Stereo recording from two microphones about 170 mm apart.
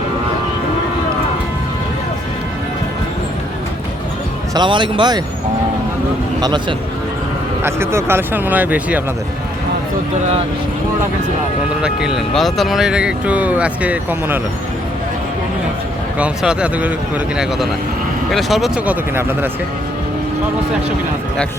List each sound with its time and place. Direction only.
4.5 s speech: 25° right (ahead or behind)
6.4 s speech: 25° right (ahead or behind)
7.6 s speech: 15° right (ahead or behind)
12.4 s speech: centre (ahead or behind)
16.1 s speech: 5° right (ahead or behind)
18.3 s speech: centre (ahead or behind)